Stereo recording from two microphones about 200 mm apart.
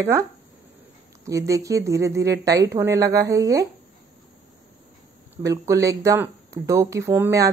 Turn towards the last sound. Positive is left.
turn(degrees=-15)  # may be behind; listen again after turning